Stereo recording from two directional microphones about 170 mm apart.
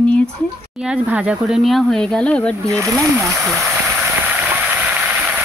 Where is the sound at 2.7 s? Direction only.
20° right (ahead or behind).